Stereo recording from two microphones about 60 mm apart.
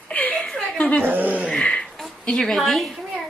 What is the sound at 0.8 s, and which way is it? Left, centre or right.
Speech, left.